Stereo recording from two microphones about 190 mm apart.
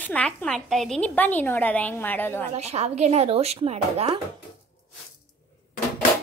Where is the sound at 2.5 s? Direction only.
35° right (ahead or behind).